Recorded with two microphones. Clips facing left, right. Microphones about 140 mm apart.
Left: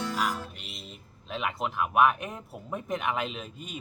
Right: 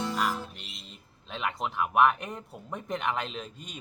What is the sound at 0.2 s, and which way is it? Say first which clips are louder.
Music: even; centre (ahead or behind).